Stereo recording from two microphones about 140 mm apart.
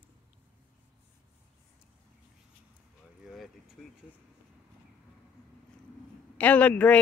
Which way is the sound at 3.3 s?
Centre (ahead or behind).